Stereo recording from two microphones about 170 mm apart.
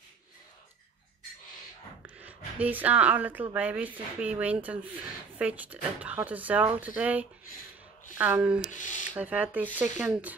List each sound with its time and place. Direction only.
2.0 s speech: 10° right (ahead or behind)
8.6 s a sound: 50° left (ahead or behind)
9.1 s speech: 10° right (ahead or behind)